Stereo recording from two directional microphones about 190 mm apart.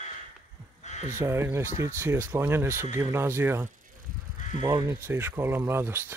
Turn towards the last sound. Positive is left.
turn(degrees=-10)  # may be behind; listen again after turning